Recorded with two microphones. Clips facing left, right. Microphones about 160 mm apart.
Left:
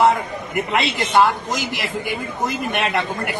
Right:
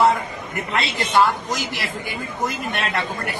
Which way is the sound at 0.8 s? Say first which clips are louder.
Left 1 dB; 20° left (ahead or behind).